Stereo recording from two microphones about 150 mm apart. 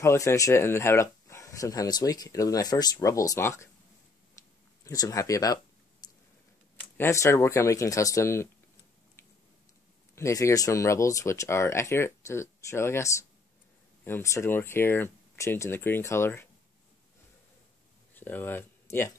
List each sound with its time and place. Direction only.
0.0 s speech: 20° left (ahead or behind)
4.8 s a sound: 20° left (ahead or behind)
7.0 s speech: 20° left (ahead or behind)
10.1 s speech: 20° left (ahead or behind)
18.1 s speech: 15° left (ahead or behind)